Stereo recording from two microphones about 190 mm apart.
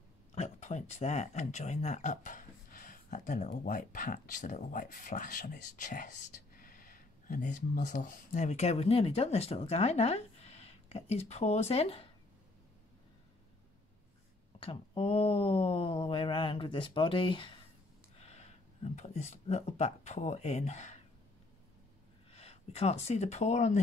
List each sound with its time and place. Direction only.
0.3 s speech: 35° left (ahead or behind)
14.6 s speech: 30° left (ahead or behind)
18.1 s a sound: 35° left (ahead or behind)
18.9 s speech: 35° left (ahead or behind)
22.3 s speech: 35° left (ahead or behind)